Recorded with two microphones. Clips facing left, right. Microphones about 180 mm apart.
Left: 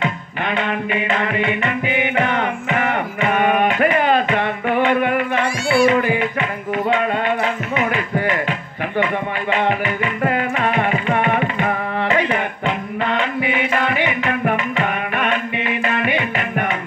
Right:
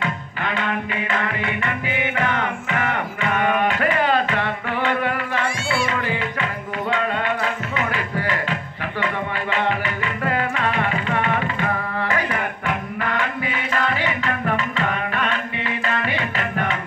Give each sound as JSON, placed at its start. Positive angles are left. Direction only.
{"t": 0.0, "sound": "music", "side_deg": 20}